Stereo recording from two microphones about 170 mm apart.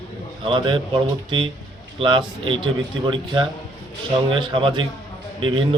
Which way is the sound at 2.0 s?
30° right (ahead or behind).